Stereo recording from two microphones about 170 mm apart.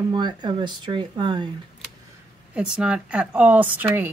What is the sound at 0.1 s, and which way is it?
Speech, 25° right (ahead or behind).